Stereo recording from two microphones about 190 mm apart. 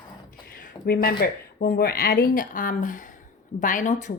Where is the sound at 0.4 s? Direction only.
45° left (ahead or behind).